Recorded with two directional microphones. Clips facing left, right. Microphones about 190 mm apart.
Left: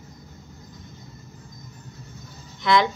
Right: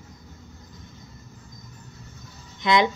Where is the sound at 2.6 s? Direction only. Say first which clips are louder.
Even; 20° right (ahead or behind).